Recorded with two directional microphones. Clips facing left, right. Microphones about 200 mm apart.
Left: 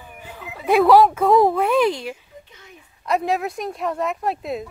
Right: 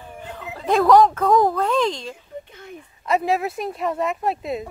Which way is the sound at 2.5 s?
55° right (ahead or behind).